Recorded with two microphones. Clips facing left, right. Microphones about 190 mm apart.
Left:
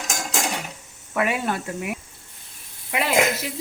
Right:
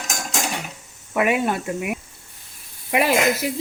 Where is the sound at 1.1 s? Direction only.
15° right (ahead or behind).